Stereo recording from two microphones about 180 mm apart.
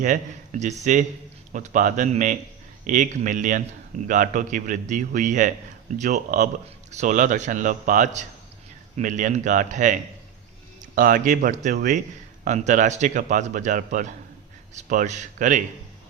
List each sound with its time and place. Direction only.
0.0 s speech: 45° right (ahead or behind)